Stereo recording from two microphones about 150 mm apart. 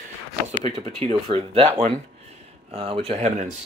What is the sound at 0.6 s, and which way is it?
Speech, 40° right (ahead or behind).